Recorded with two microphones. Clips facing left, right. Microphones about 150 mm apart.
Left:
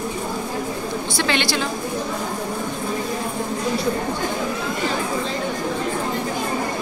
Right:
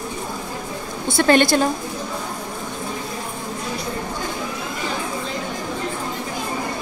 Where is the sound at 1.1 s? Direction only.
45° right (ahead or behind).